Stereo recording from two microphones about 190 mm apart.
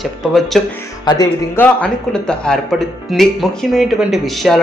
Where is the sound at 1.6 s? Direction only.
5° left (ahead or behind).